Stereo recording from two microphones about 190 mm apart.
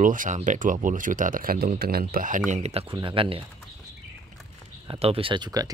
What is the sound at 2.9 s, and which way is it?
Speech, 25° right (ahead or behind).